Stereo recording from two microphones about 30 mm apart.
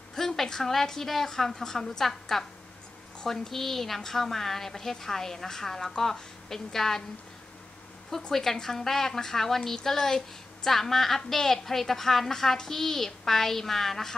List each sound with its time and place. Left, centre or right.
0.1 s a woman's voice: centre
8.3 s a woman's voice: centre